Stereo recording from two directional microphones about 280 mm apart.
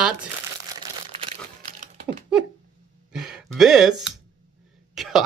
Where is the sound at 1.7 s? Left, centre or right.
Right.